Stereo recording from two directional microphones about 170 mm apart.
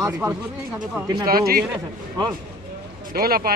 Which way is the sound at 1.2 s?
60° right (ahead or behind).